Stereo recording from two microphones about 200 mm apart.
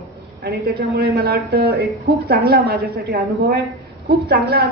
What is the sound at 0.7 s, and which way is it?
A woman's voice, 55° right (ahead or behind).